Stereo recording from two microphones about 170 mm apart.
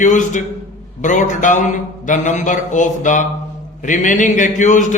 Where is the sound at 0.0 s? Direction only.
45° left (ahead or behind).